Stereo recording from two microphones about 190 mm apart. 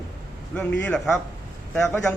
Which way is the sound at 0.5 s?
5° left (ahead or behind).